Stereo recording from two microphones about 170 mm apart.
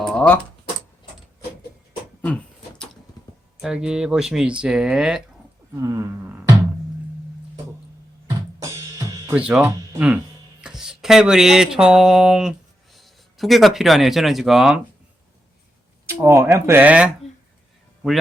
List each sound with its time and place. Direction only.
0.0 s typing: 5° left (ahead or behind)
2.2 s a sound: 5° left (ahead or behind)
3.6 s speech: 5° right (ahead or behind)
5.7 s speech: 20° right (ahead or behind)
9.5 s speech: 10° right (ahead or behind)
10.6 s a sound: 5° right (ahead or behind)
16.0 s speech: 15° right (ahead or behind)